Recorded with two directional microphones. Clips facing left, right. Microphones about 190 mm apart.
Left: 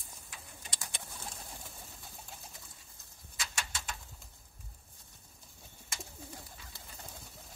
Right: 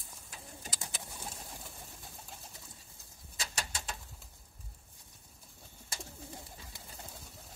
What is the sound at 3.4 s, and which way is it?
Bird, 35° right (ahead or behind).